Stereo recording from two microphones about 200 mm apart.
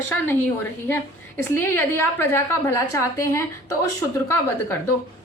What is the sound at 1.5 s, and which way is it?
A woman's voice, 10° left (ahead or behind).